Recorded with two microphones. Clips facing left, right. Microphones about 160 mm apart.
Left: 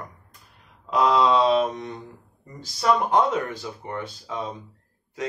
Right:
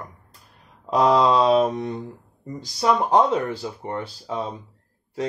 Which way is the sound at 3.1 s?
30° right (ahead or behind).